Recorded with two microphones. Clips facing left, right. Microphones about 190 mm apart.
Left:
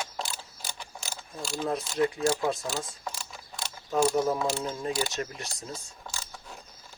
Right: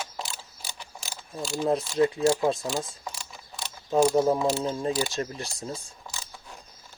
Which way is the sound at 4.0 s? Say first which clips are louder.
Right 4 dB; 25° right (ahead or behind).